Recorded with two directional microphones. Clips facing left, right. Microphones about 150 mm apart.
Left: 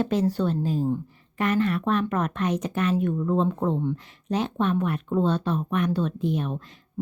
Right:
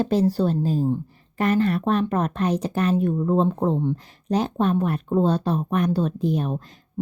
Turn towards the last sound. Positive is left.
turn(degrees=-40)  # may be behind; listen again after turning